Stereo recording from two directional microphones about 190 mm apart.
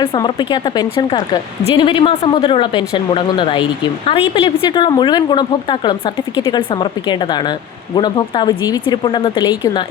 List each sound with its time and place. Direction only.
0.0 s speech: 25° left (ahead or behind)
7.9 s speech: 25° left (ahead or behind)